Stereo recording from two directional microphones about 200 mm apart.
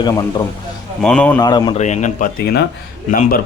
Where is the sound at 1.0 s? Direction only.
5° left (ahead or behind).